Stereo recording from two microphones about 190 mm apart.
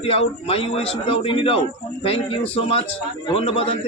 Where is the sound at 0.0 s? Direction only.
30° left (ahead or behind).